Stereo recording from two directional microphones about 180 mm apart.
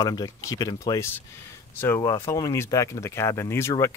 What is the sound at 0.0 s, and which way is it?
Speech, 20° left (ahead or behind).